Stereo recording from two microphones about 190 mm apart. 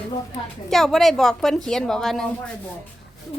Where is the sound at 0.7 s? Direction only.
Centre (ahead or behind).